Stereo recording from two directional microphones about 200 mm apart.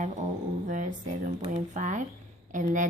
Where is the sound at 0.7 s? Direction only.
40° right (ahead or behind).